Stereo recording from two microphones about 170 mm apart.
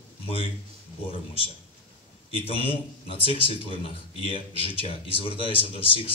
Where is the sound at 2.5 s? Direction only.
35° left (ahead or behind).